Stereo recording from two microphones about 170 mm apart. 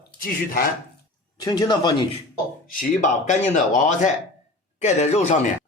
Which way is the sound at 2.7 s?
50° left (ahead or behind).